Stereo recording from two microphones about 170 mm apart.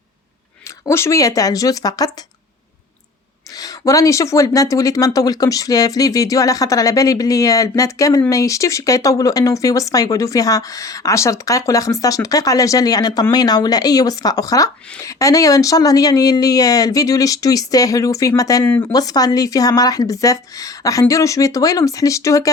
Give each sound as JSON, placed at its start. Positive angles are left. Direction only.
{"t": 0.9, "sound": "speech", "side_deg": 15}
{"t": 3.6, "sound": "speech", "side_deg": 20}